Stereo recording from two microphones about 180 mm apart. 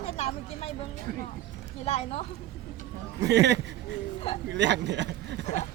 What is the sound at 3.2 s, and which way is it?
Speech, 70° right (ahead or behind).